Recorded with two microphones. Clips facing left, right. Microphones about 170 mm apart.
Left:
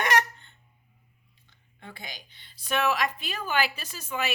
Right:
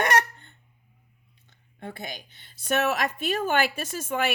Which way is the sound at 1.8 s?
50° right (ahead or behind).